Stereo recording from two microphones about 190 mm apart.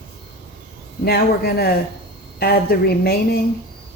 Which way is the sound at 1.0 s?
55° left (ahead or behind).